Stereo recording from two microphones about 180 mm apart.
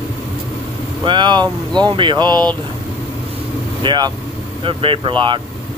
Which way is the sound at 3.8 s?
25° right (ahead or behind).